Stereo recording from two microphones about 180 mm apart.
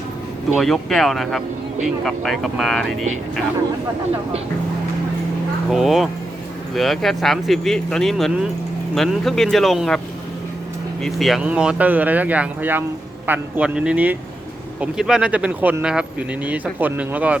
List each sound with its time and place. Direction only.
0.5 s speech: centre (ahead or behind)
5.7 s speech: centre (ahead or behind)
11.0 s speech: centre (ahead or behind)